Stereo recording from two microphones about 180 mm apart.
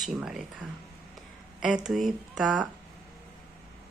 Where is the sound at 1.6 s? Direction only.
5° right (ahead or behind).